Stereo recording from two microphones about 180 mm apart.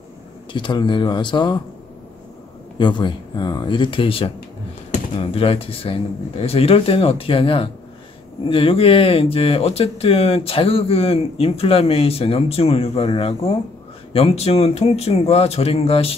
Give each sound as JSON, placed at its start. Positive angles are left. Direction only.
{"t": 0.5, "sound": "speech", "side_deg": 25}
{"t": 2.8, "sound": "speech", "side_deg": 25}